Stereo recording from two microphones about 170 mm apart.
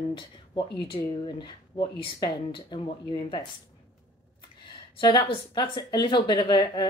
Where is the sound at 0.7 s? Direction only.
30° left (ahead or behind).